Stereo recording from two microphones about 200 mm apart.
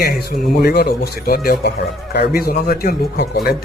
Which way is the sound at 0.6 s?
50° left (ahead or behind).